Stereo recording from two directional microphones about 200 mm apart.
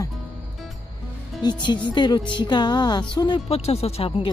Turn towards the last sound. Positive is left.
turn(degrees=30)  # may be behind; listen again after turning